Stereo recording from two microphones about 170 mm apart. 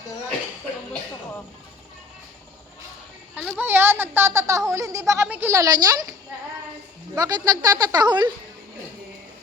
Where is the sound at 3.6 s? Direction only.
15° right (ahead or behind).